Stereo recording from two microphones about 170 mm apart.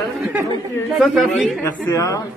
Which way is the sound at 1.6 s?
15° left (ahead or behind).